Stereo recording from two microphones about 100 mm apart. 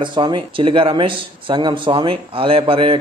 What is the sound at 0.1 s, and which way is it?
A man's voice, 50° right (ahead or behind).